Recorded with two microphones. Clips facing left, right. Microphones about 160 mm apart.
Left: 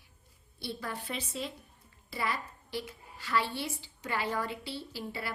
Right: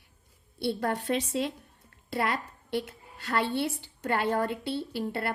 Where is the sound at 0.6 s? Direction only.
65° right (ahead or behind).